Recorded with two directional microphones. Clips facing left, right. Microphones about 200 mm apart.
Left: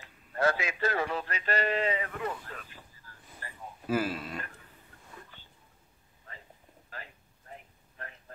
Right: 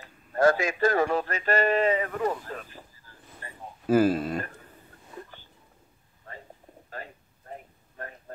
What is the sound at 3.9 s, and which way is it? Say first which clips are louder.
Speech: right 9 dB; 45° right (ahead or behind).